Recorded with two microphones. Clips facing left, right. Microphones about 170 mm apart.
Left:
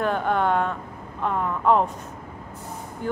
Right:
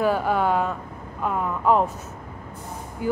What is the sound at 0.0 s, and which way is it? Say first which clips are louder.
Speech: right 1 dB; 5° right (ahead or behind).